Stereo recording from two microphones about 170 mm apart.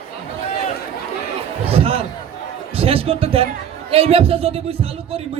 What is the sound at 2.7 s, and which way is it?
A man's voice, 35° right (ahead or behind).